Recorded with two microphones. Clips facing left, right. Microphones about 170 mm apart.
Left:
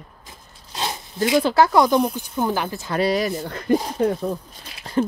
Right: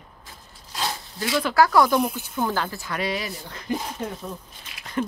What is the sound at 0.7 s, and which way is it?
Speech, 20° left (ahead or behind).